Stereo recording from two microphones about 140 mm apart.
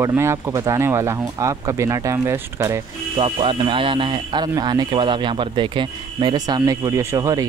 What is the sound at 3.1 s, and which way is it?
Speech, 35° right (ahead or behind).